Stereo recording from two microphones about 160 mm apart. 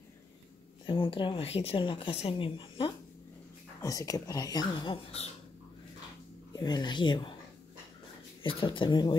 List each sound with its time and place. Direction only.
0.8 s speech: 35° left (ahead or behind)
3.8 s speech: 20° left (ahead or behind)
4.9 s speech: 40° left (ahead or behind)
6.5 s speech: 25° left (ahead or behind)
8.4 s speech: 30° left (ahead or behind)